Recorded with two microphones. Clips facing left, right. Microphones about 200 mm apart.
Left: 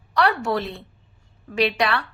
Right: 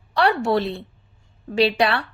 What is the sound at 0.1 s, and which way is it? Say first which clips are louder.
A woman's voice: right 2 dB; 30° right (ahead or behind).